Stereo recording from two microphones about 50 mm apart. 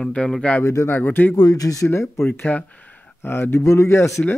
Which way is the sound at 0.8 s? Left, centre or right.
Left.